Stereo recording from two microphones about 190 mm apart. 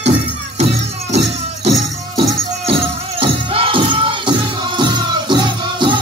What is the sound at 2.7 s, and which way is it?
Music, 30° right (ahead or behind).